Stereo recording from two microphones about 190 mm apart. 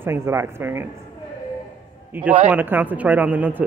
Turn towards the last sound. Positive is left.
turn(degrees=-10)  # may be behind; listen again after turning